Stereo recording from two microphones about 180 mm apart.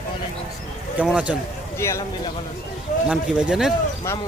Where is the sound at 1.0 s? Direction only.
5° right (ahead or behind).